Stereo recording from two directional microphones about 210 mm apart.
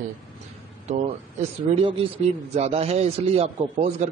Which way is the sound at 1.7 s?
30° right (ahead or behind).